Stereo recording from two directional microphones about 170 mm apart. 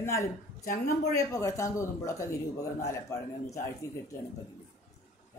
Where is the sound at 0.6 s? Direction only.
50° left (ahead or behind).